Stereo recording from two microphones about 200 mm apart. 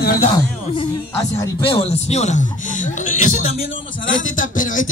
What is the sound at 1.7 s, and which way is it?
Speech, 30° left (ahead or behind).